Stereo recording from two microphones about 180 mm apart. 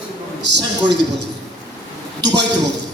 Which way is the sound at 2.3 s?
70° right (ahead or behind).